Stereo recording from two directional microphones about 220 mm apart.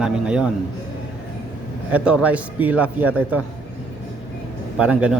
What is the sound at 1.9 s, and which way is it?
A man's voice, 5° right (ahead or behind).